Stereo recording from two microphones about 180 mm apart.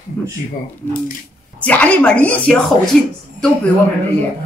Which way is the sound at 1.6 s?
10° left (ahead or behind).